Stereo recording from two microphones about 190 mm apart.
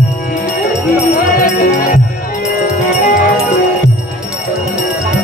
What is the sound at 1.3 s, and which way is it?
Music, 45° left (ahead or behind).